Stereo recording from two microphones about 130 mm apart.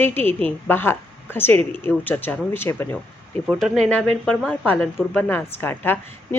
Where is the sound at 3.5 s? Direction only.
5° left (ahead or behind).